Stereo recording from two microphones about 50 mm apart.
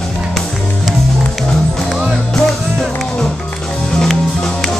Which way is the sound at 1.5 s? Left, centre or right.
Centre.